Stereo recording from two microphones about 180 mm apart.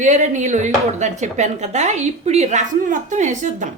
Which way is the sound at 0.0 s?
40° right (ahead or behind).